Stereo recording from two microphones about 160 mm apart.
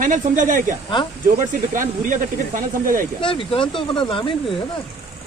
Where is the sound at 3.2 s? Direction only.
35° left (ahead or behind).